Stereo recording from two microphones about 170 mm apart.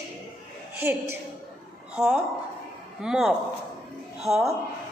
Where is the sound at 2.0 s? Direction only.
5° right (ahead or behind).